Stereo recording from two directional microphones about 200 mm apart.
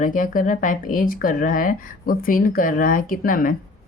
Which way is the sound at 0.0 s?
40° left (ahead or behind).